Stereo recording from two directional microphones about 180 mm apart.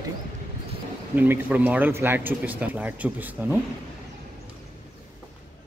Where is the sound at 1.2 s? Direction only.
10° right (ahead or behind).